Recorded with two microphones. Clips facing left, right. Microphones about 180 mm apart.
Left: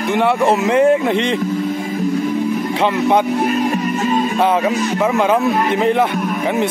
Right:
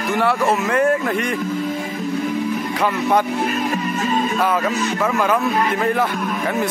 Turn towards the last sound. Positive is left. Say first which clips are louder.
# left 3 dB
turn(degrees=20)  # may be behind; listen again after turning